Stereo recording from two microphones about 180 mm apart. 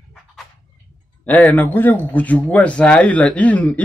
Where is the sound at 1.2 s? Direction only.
10° left (ahead or behind).